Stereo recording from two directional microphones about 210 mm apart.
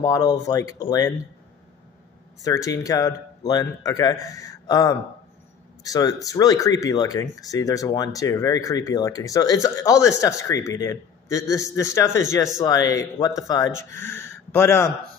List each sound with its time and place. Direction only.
0.0 s speech: 15° left (ahead or behind)
2.4 s speech: 15° left (ahead or behind)